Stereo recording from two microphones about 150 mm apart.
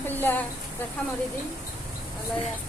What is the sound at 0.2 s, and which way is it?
Speech, 10° left (ahead or behind).